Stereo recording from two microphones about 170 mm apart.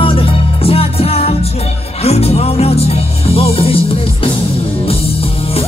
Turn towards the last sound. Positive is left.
turn(degrees=35)  # may be behind; listen again after turning